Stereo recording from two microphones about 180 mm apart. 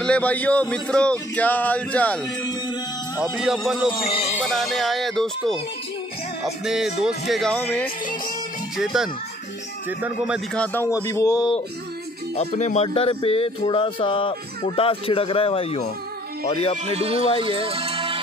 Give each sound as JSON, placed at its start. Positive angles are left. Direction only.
{"t": 0.0, "sound": "a sound", "side_deg": 5}
{"t": 3.2, "sound": "speech", "side_deg": -5}
{"t": 3.9, "sound": "speech", "side_deg": 30}
{"t": 4.5, "sound": "speech", "side_deg": 0}
{"t": 8.7, "sound": "speech", "side_deg": -5}
{"t": 10.5, "sound": "a sound", "side_deg": 10}
{"t": 12.4, "sound": "speech", "side_deg": 40}
{"t": 16.7, "sound": "speech", "side_deg": -35}